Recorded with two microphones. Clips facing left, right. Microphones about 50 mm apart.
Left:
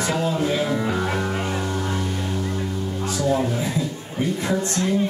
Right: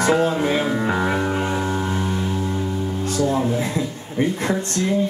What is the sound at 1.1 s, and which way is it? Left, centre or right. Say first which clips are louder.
Music: right 3 dB; centre.